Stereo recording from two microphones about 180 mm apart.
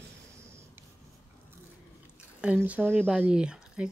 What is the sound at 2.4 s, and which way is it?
Speech, 5° right (ahead or behind).